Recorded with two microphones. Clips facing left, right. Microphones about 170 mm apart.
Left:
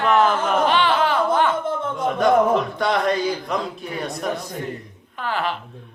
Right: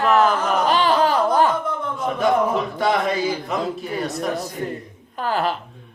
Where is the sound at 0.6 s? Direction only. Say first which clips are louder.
Right 3 dB; 40° right (ahead or behind).